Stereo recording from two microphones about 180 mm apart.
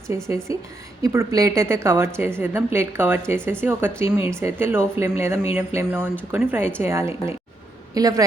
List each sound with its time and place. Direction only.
1.0 s a woman's voice: 15° right (ahead or behind)